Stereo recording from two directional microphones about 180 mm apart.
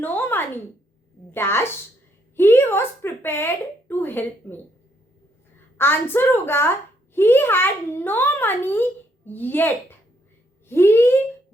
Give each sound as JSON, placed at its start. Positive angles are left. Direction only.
{"t": 0.0, "sound": "a sound", "side_deg": 10}
{"t": 1.3, "sound": "a child's voice", "side_deg": 15}
{"t": 5.7, "sound": "a child's voice", "side_deg": 10}